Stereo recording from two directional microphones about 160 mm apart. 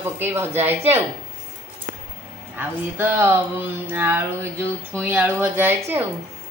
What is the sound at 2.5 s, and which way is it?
Speech, 15° right (ahead or behind).